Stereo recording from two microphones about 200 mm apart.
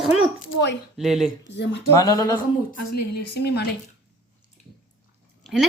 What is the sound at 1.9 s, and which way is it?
Speech, 15° left (ahead or behind).